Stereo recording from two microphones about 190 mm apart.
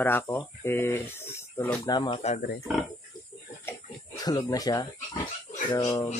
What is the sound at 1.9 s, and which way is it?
Speech, 25° left (ahead or behind).